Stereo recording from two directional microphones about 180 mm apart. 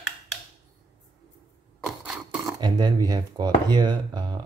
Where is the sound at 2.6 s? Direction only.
25° right (ahead or behind).